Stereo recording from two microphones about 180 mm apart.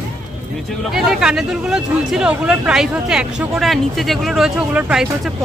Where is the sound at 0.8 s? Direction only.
Centre (ahead or behind).